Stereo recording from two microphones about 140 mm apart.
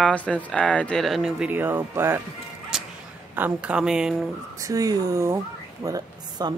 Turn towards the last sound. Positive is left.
turn(degrees=-25)  # may be behind; listen again after turning